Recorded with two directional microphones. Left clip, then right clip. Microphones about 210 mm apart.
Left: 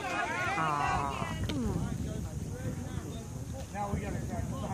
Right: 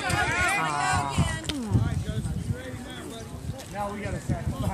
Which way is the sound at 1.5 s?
10° right (ahead or behind).